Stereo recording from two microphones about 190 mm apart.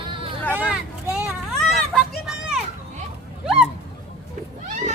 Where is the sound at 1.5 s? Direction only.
Centre (ahead or behind).